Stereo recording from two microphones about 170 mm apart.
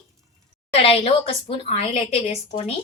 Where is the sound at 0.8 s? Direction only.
35° left (ahead or behind).